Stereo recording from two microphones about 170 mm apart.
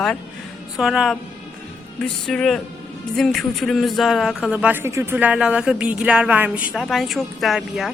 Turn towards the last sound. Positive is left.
turn(degrees=0)  # may be behind; listen again after turning